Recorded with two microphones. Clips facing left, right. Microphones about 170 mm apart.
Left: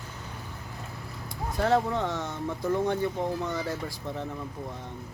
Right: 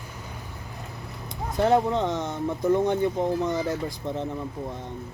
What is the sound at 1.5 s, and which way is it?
Speech, 20° right (ahead or behind).